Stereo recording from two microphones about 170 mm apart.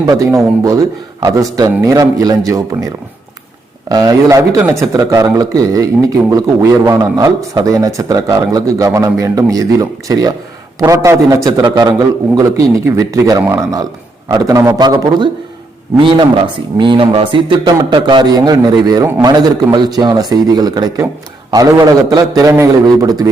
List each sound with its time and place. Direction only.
0.0 s a man's voice: 20° right (ahead or behind)
3.8 s a man's voice: 20° right (ahead or behind)